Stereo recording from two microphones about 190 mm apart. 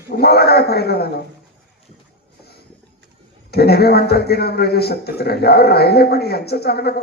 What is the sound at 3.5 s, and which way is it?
A man's voice, 55° left (ahead or behind).